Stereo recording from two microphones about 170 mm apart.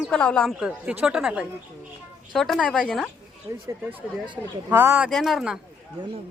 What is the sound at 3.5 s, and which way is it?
Speech, 20° right (ahead or behind).